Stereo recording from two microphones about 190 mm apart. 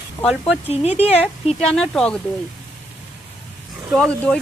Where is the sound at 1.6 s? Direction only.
Centre (ahead or behind).